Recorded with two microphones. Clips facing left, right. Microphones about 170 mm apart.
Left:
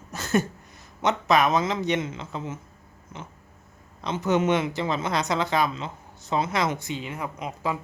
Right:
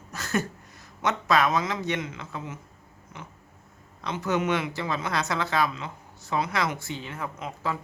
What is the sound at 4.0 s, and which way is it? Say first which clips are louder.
Speech: left 3 dB; 20° left (ahead or behind).